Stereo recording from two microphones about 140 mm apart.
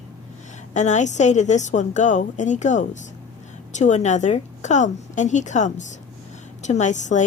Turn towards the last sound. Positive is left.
turn(degrees=60)  # may be behind; listen again after turning